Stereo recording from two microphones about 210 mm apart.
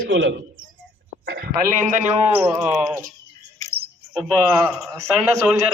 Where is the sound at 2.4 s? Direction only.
10° right (ahead or behind).